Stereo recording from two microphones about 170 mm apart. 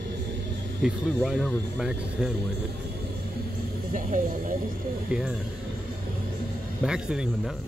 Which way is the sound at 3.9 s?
50° right (ahead or behind).